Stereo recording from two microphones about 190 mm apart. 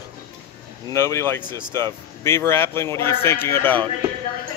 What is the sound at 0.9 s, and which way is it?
Speech, 15° left (ahead or behind).